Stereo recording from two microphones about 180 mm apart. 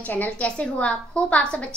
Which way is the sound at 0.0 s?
10° left (ahead or behind).